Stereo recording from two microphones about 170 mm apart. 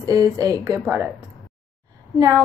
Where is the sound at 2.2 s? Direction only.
20° right (ahead or behind).